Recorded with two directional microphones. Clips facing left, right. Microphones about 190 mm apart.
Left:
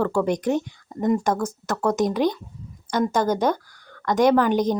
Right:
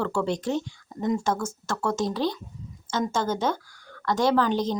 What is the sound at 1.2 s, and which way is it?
Speech, 15° left (ahead or behind).